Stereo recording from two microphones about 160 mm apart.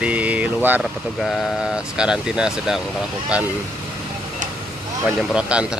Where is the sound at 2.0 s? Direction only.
5° right (ahead or behind).